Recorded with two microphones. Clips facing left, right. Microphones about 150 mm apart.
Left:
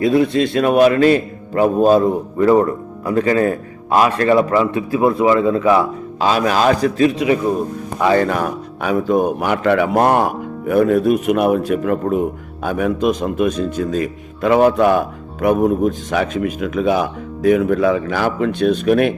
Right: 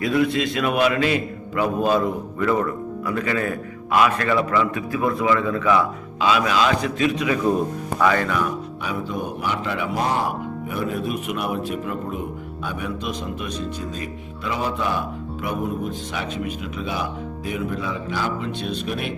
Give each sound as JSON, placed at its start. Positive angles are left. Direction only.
{"t": 0.0, "sound": "a man's voice", "side_deg": 30}
{"t": 8.4, "sound": "a man's voice", "side_deg": 55}